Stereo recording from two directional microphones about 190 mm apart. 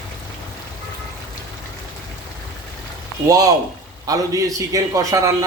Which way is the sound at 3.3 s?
20° right (ahead or behind).